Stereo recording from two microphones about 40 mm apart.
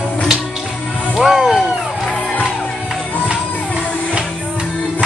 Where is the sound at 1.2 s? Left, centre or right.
Centre.